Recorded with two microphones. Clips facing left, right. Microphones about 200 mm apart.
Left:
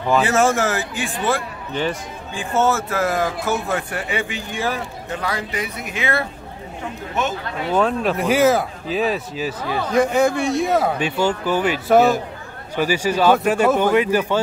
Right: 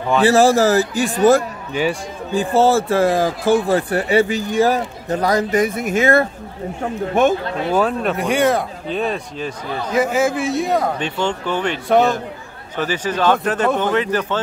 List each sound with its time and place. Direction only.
0.2 s speech: 35° right (ahead or behind)
1.7 s speech: 10° right (ahead or behind)
2.3 s speech: 30° right (ahead or behind)
7.7 s a man's voice: centre (ahead or behind)